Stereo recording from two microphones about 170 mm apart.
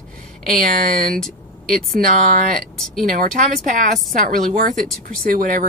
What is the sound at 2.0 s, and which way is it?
Speech, 55° right (ahead or behind).